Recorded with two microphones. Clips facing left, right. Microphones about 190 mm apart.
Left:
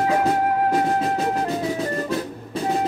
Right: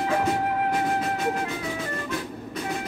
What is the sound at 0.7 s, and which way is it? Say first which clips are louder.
Music: left 5 dB; 40° left (ahead or behind).